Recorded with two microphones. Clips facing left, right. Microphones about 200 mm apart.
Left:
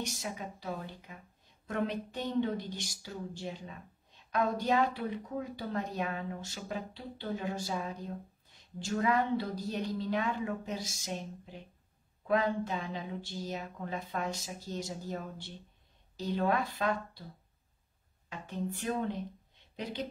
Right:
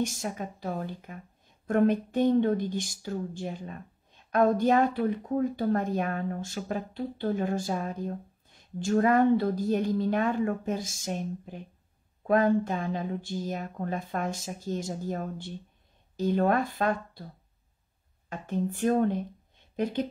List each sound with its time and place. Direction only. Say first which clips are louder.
0.0 s speech: right 7 dB; 50° right (ahead or behind)
18.3 s speech: right 7 dB; 50° right (ahead or behind)